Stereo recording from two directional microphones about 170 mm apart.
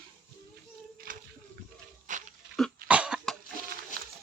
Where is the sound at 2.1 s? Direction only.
50° right (ahead or behind).